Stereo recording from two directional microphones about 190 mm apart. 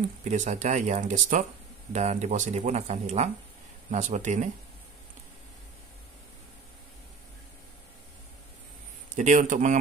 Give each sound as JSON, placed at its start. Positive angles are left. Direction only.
{"t": 0.2, "sound": "speech", "side_deg": -40}
{"t": 9.1, "sound": "speech", "side_deg": -40}